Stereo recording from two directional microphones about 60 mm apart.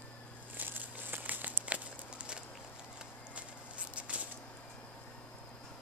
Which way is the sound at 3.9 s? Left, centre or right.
Right.